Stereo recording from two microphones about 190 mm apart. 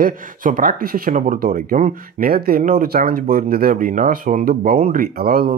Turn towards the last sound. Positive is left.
turn(degrees=-55)  # may be behind; listen again after turning